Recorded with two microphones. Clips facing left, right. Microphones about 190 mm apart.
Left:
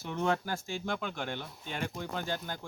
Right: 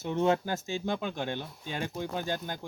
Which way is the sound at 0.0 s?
20° right (ahead or behind).